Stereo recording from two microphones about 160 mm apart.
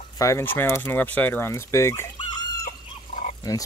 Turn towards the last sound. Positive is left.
turn(degrees=20)  # may be behind; listen again after turning